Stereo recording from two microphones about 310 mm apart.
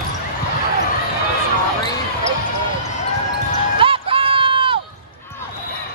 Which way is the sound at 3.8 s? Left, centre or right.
Centre.